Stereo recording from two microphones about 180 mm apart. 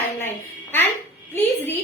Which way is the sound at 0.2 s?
10° left (ahead or behind).